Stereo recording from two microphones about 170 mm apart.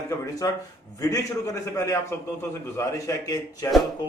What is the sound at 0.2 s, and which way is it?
A man's voice, 20° left (ahead or behind).